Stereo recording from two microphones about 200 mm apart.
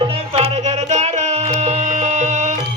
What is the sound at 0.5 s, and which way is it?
Music, 35° right (ahead or behind).